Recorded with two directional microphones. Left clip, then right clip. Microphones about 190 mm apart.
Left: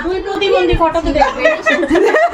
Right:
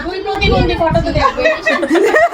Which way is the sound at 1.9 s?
5° right (ahead or behind).